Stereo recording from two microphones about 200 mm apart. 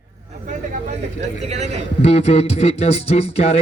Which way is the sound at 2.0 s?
35° left (ahead or behind).